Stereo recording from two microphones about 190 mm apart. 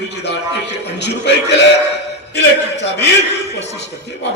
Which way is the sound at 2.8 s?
65° left (ahead or behind).